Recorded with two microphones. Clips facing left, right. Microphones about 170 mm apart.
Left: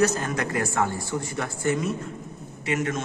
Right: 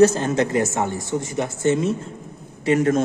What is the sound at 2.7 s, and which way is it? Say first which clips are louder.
Speech: right 9 dB; 35° right (ahead or behind).